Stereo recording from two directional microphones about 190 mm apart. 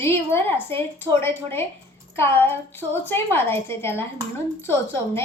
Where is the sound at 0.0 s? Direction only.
10° left (ahead or behind).